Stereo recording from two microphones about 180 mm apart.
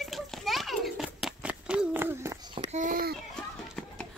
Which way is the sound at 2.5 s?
35° right (ahead or behind).